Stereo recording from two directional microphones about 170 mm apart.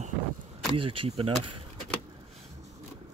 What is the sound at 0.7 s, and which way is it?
Speech, 30° right (ahead or behind).